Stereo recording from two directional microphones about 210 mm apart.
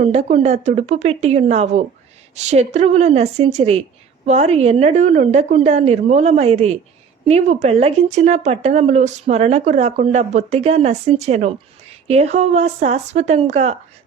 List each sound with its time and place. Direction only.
0.0 s speech: 30° right (ahead or behind)